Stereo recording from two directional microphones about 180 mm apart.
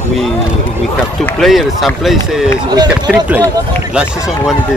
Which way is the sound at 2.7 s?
20° right (ahead or behind).